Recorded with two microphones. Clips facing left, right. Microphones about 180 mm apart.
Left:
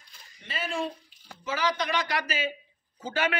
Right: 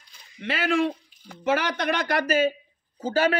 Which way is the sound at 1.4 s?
60° right (ahead or behind).